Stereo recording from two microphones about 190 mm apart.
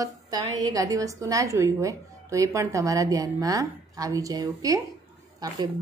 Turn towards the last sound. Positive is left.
turn(degrees=-20)  # may be behind; listen again after turning